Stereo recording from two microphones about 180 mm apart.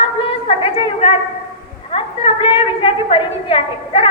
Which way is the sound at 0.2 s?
30° left (ahead or behind).